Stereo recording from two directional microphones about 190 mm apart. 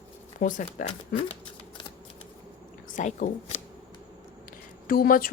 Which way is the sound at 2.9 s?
40° left (ahead or behind).